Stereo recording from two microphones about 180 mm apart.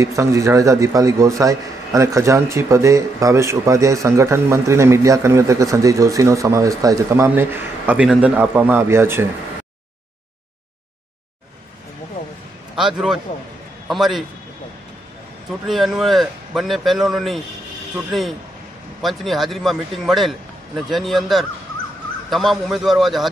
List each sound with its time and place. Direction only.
0.0 s speech: 15° right (ahead or behind)
12.7 s a man's voice: 5° right (ahead or behind)
15.6 s a man's voice: centre (ahead or behind)